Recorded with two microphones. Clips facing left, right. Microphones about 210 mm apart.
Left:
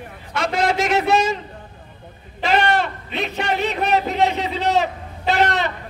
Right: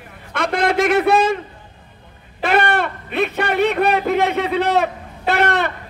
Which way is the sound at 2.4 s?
55° right (ahead or behind).